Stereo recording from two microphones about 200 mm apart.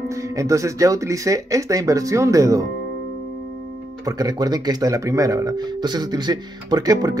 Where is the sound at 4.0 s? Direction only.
20° right (ahead or behind).